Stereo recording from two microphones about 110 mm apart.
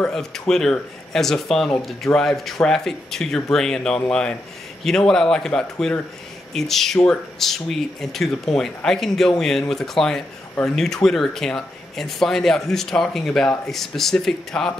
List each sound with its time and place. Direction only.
0.0 s speech: 5° left (ahead or behind)